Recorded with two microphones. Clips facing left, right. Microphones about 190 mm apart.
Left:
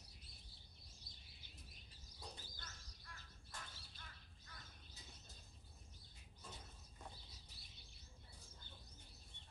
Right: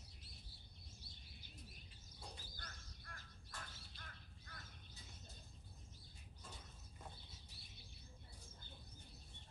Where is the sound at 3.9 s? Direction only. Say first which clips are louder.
Right 2 dB; 55° right (ahead or behind).